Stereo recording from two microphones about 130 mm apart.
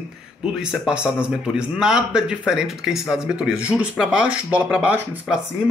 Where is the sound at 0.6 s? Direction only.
5° right (ahead or behind).